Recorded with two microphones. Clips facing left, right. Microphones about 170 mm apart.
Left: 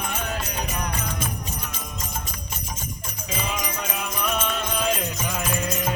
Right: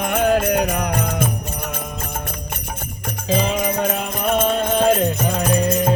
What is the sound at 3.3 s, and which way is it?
Music, 30° right (ahead or behind).